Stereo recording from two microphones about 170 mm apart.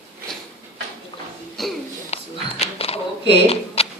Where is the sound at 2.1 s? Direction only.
40° left (ahead or behind).